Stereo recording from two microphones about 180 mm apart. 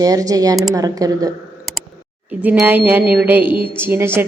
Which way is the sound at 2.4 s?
10° right (ahead or behind).